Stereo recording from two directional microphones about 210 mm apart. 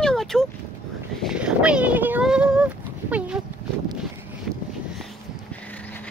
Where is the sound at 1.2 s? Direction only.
5° right (ahead or behind).